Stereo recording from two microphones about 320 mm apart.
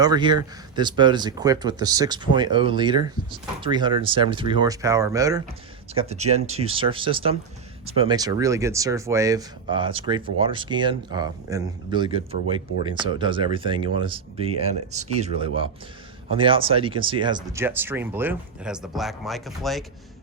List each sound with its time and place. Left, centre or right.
0.0 s speech: centre